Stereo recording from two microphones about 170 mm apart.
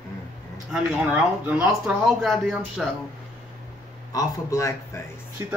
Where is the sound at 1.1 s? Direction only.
5° right (ahead or behind).